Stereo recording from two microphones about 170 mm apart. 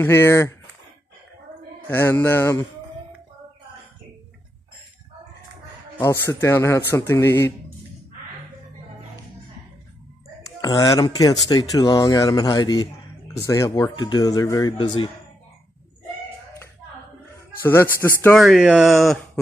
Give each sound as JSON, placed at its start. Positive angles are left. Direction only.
{"t": 0.0, "sound": "speech", "side_deg": 15}
{"t": 1.9, "sound": "speech", "side_deg": 10}
{"t": 5.9, "sound": "speech", "side_deg": 15}
{"t": 10.4, "sound": "speech", "side_deg": 25}
{"t": 17.6, "sound": "speech", "side_deg": 15}
{"t": 18.2, "sound": "speech", "side_deg": 0}